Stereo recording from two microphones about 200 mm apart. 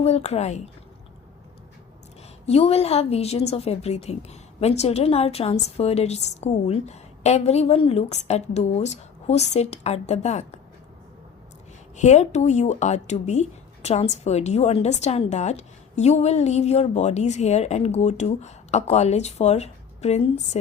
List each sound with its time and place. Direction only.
0.0 s speech: 30° left (ahead or behind)
2.5 s speech: 30° left (ahead or behind)
11.9 s speech: 35° left (ahead or behind)